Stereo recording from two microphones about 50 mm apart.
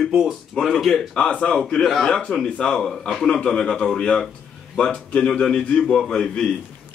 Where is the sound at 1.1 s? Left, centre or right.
Left; by 3.3 s centre.